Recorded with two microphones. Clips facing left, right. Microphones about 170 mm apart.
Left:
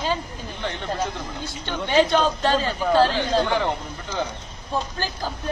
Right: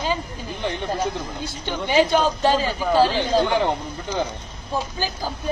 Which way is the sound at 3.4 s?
15° right (ahead or behind).